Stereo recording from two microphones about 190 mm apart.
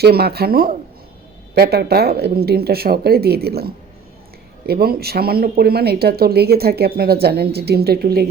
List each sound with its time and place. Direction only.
0.0 s speech: 55° right (ahead or behind)